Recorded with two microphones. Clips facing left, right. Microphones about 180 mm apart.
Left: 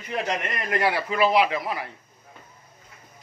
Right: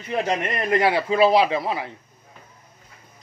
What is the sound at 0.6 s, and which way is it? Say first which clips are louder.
Speech: right 5 dB; 25° right (ahead or behind).